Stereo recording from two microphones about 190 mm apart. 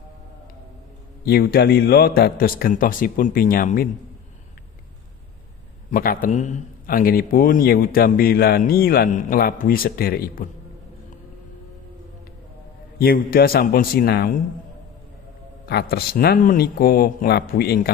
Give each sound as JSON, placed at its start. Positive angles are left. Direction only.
{"t": 1.2, "sound": "a man's voice", "side_deg": 55}
{"t": 5.9, "sound": "a man's voice", "side_deg": 45}
{"t": 13.0, "sound": "a man's voice", "side_deg": 50}
{"t": 15.6, "sound": "a man's voice", "side_deg": 60}